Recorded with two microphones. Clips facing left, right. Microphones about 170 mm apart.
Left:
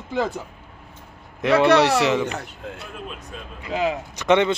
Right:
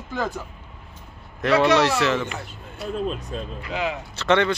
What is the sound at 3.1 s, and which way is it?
Speech, 35° right (ahead or behind).